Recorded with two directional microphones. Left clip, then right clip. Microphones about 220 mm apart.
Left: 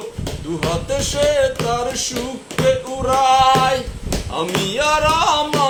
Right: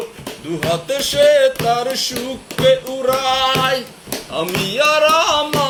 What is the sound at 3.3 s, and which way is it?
Music, 15° left (ahead or behind).